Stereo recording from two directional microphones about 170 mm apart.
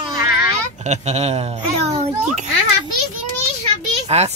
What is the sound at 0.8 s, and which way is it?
Speech, 40° right (ahead or behind).